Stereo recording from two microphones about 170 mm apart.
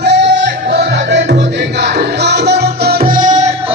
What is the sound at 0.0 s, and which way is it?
Music, 90° right.